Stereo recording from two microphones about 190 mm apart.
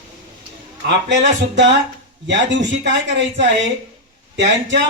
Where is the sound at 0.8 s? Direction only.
75° right (ahead or behind).